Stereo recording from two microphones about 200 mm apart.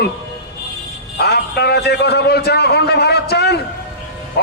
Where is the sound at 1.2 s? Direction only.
55° left (ahead or behind).